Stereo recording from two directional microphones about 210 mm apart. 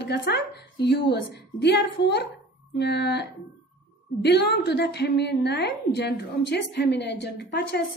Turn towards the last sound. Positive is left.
turn(degrees=55)  # may be behind; listen again after turning